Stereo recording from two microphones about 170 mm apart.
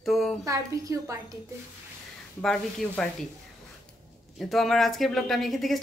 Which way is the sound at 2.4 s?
5° left (ahead or behind).